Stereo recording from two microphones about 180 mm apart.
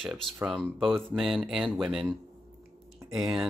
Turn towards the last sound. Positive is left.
turn(degrees=0)  # may be behind; listen again after turning